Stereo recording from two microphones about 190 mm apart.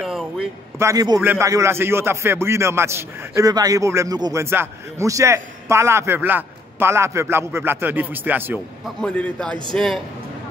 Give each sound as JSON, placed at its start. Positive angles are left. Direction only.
{"t": 0.0, "sound": "a sound", "side_deg": -5}
{"t": 0.7, "sound": "a man's voice", "side_deg": -15}
{"t": 9.0, "sound": "a man's voice", "side_deg": 5}